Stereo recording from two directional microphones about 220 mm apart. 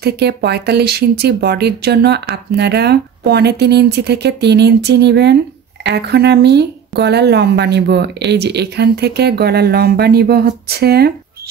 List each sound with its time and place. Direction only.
0.0 s speech: 50° right (ahead or behind)